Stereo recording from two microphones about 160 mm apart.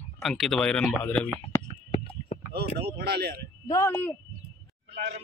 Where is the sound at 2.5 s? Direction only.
80° right.